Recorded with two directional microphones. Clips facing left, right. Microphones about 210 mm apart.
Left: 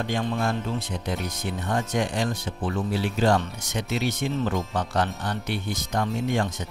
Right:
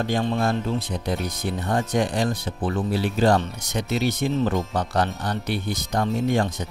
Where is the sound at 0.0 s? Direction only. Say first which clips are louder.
Right 3 dB; 35° right (ahead or behind).